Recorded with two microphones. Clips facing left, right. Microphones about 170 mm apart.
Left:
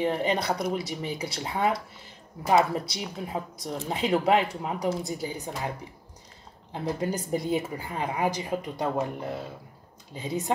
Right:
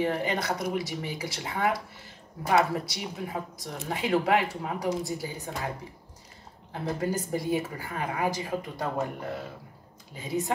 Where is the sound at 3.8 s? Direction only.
20° left (ahead or behind).